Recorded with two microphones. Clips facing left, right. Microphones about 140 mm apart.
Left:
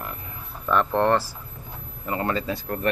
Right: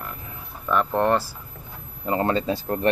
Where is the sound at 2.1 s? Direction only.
30° right (ahead or behind).